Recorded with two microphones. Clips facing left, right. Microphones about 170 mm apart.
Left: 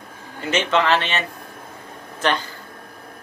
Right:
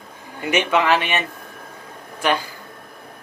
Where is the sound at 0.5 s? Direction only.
15° right (ahead or behind).